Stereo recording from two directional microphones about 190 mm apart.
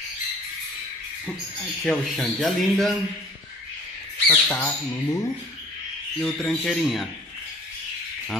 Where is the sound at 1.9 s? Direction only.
Centre (ahead or behind).